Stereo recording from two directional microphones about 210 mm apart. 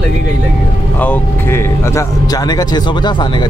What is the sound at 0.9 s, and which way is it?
Speech, 10° left (ahead or behind).